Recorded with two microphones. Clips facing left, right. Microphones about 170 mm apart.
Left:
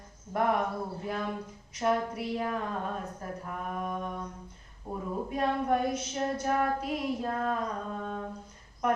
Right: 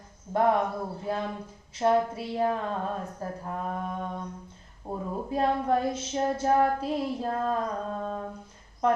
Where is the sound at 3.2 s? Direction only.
30° right (ahead or behind).